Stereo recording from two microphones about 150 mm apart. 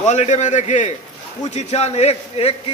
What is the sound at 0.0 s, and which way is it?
A man's voice, 50° left (ahead or behind).